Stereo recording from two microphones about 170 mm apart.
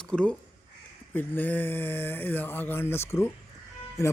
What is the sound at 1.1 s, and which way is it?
Speech, 10° left (ahead or behind).